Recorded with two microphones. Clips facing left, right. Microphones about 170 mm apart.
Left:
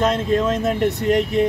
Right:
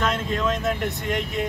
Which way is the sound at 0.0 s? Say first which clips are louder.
Left 6 dB; 30° left (ahead or behind).